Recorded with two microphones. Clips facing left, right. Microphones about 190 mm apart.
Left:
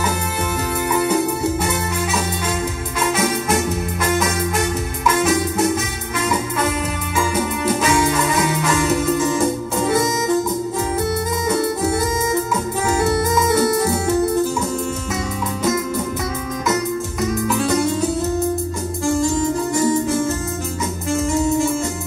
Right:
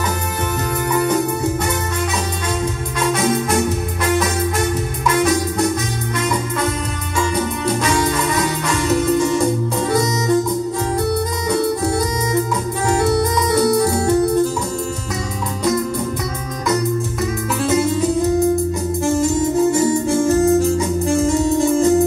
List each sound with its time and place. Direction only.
3.1 s music: centre (ahead or behind)
5.0 s music: centre (ahead or behind)
7.2 s music: 5° left (ahead or behind)
13.1 s music: centre (ahead or behind)
17.2 s music: centre (ahead or behind)
19.7 s music: 30° right (ahead or behind)